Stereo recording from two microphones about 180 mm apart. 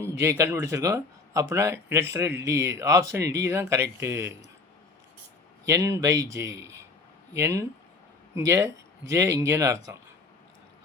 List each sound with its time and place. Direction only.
0.0 s speech: 15° right (ahead or behind)
5.6 s speech: 15° right (ahead or behind)